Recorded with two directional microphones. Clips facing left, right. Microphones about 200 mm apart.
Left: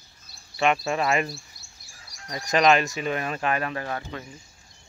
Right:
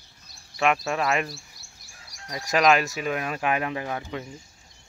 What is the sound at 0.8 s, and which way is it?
Speech, centre (ahead or behind).